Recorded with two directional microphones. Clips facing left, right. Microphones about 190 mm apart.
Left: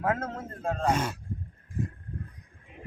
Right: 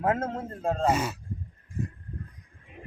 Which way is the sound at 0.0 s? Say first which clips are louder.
Right 3 dB; 30° right (ahead or behind).